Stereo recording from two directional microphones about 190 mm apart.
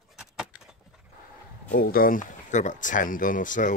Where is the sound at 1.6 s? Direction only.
50° left (ahead or behind).